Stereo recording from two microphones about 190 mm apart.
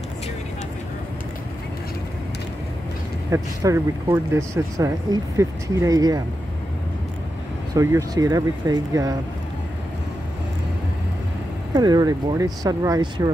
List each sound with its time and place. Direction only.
3.3 s speech: 15° right (ahead or behind)
7.7 s speech: 15° right (ahead or behind)
11.7 s speech: 20° right (ahead or behind)